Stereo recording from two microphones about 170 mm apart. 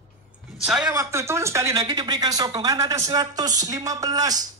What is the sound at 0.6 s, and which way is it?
Speech, 5° right (ahead or behind).